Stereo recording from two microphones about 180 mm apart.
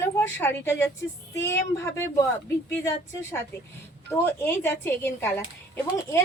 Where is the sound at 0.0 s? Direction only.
10° left (ahead or behind).